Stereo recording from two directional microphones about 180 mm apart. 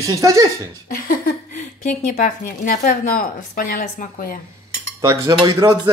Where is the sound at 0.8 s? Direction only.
50° left (ahead or behind).